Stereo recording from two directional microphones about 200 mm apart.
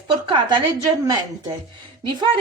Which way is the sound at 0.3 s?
20° right (ahead or behind).